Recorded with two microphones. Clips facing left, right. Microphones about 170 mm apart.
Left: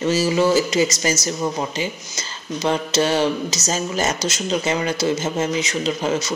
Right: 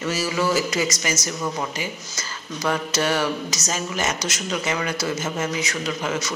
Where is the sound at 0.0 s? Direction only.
25° left (ahead or behind).